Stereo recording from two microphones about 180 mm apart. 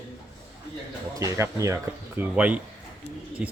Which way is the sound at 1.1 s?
15° right (ahead or behind).